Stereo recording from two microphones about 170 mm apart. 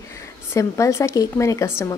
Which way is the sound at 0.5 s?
20° left (ahead or behind).